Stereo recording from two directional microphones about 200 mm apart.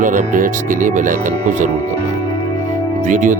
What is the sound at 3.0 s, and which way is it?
Speech, 40° right (ahead or behind).